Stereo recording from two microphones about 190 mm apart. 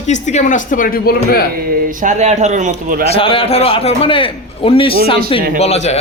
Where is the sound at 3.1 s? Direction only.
30° left (ahead or behind).